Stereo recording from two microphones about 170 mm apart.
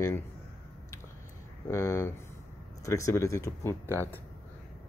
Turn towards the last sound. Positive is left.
turn(degrees=10)  # may be behind; listen again after turning